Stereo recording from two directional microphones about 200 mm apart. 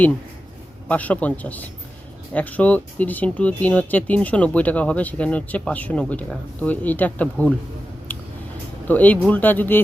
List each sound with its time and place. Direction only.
0.9 s speech: 10° left (ahead or behind)
8.9 s speech: 10° left (ahead or behind)